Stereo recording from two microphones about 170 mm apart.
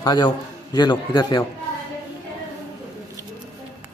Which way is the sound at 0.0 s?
25° left (ahead or behind).